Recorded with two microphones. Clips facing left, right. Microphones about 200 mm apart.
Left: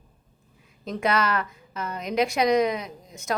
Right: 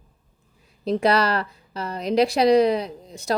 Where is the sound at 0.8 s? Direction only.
35° right (ahead or behind).